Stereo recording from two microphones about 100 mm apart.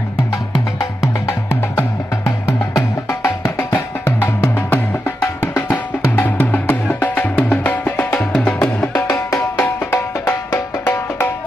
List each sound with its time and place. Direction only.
0.7 s music: 30° left (ahead or behind); by 8.9 s 15° left (ahead or behind)
8.9 s music: 25° left (ahead or behind)